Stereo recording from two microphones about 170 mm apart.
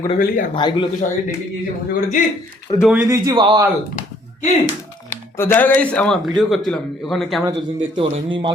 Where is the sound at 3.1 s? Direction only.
20° right (ahead or behind).